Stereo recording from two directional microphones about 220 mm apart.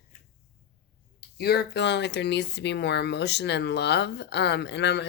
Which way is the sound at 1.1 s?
45° left (ahead or behind).